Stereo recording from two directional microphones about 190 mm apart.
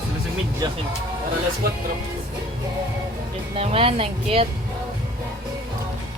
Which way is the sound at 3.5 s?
30° right (ahead or behind).